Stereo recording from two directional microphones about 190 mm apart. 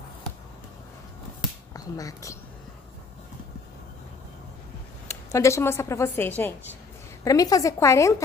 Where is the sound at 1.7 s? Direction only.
20° left (ahead or behind).